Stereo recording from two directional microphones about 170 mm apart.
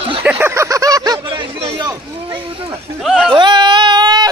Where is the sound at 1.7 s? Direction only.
25° right (ahead or behind).